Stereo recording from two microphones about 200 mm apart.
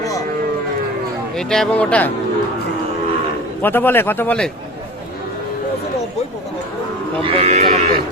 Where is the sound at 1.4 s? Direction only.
Centre (ahead or behind).